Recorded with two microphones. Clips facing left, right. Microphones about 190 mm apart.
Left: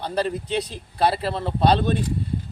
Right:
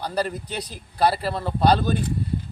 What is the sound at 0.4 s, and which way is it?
Speech, 25° left (ahead or behind).